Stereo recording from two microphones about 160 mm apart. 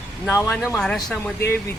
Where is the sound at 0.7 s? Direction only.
5° left (ahead or behind).